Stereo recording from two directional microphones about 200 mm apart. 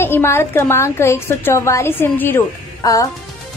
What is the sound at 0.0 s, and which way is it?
A woman's voice, 10° left (ahead or behind).